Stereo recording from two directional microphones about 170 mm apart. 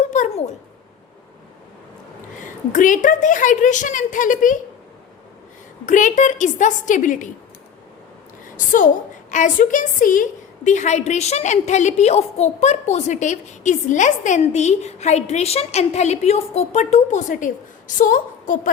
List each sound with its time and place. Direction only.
0.1 s a sound: 45° left (ahead or behind)
2.4 s a woman's voice: 50° left (ahead or behind)
5.8 s a woman's voice: 50° left (ahead or behind)
8.5 s a woman's voice: 50° left (ahead or behind)